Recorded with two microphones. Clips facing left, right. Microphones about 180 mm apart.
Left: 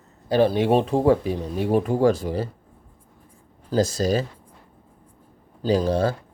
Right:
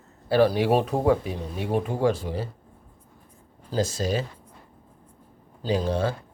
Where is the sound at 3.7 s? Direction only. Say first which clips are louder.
Left 5 dB; 40° left (ahead or behind).